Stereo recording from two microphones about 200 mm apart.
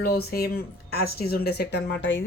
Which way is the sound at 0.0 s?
50° left (ahead or behind).